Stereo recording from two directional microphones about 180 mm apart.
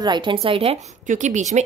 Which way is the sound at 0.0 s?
25° right (ahead or behind).